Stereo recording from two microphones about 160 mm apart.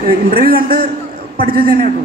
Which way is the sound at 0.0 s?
65° right (ahead or behind).